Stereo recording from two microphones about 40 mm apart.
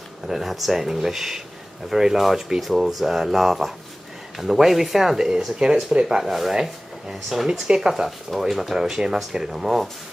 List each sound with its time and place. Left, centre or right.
0.3 s speech: centre
8.3 s speech: centre